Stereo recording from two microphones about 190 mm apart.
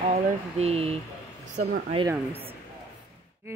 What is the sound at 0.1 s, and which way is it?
Speech, 35° right (ahead or behind).